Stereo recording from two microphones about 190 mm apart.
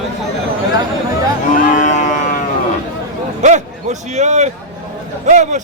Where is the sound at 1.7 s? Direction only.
40° left (ahead or behind).